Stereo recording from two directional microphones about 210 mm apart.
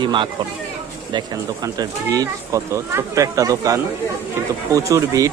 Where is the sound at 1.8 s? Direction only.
15° right (ahead or behind).